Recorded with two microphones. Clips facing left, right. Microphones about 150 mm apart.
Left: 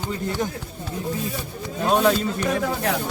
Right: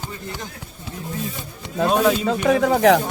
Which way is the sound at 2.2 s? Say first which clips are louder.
Right 6 dB; 90° right.